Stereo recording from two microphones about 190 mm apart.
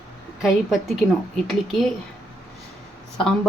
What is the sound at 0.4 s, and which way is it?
Speech, centre (ahead or behind).